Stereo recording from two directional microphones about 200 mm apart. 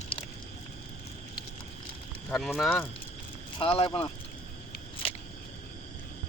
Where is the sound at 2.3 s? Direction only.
Centre (ahead or behind).